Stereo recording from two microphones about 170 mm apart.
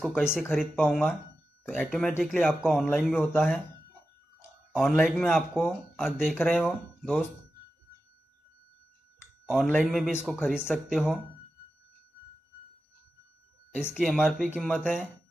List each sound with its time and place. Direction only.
0.2 s speech: 5° right (ahead or behind)
4.7 s speech: centre (ahead or behind)
9.5 s speech: centre (ahead or behind)
13.7 s speech: 5° right (ahead or behind)